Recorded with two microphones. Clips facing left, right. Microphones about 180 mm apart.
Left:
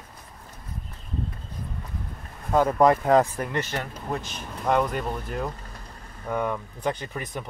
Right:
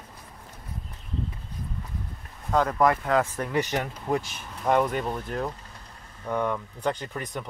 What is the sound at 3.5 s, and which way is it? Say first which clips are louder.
Speech: right 3 dB; 15° right (ahead or behind).